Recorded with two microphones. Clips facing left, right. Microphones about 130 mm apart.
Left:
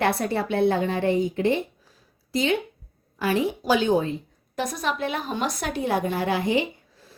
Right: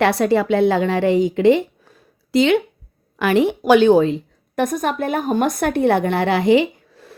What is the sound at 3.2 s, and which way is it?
A woman's voice, 70° right (ahead or behind).